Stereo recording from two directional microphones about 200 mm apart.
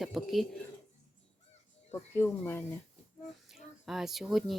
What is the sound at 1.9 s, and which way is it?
Speech, 10° left (ahead or behind).